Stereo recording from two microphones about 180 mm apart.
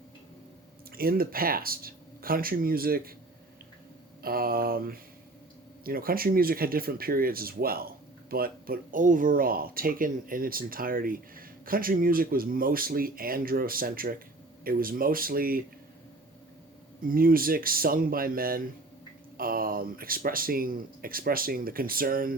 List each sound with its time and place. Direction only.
0.9 s speech: 55° right (ahead or behind)
4.2 s speech: 55° right (ahead or behind)
17.0 s speech: 55° right (ahead or behind)